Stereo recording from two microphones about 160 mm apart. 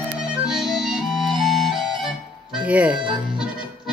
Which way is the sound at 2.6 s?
10° right (ahead or behind).